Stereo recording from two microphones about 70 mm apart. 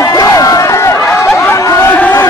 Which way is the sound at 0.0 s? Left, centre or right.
Left.